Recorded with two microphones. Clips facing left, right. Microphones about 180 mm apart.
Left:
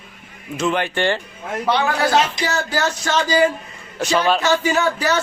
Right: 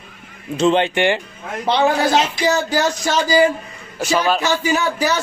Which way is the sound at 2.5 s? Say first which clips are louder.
Right 4 dB; 10° right (ahead or behind).